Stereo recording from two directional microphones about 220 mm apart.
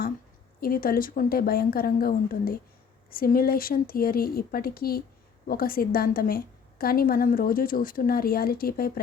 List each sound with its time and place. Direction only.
0.6 s a woman's voice: 40° left (ahead or behind)